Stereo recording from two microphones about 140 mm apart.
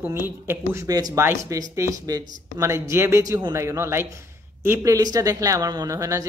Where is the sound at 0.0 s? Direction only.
15° right (ahead or behind).